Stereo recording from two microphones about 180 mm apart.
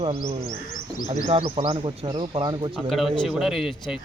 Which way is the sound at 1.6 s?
30° right (ahead or behind).